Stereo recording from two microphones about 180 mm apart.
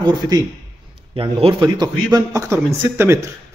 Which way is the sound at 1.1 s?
30° right (ahead or behind).